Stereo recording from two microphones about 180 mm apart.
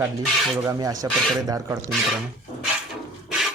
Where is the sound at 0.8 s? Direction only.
20° right (ahead or behind).